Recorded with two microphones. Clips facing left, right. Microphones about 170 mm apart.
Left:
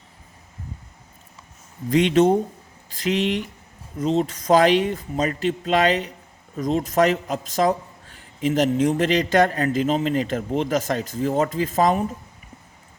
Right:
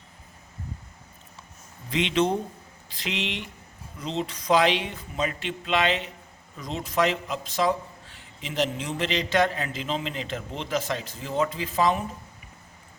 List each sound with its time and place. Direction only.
1.9 s speech: 45° left (ahead or behind)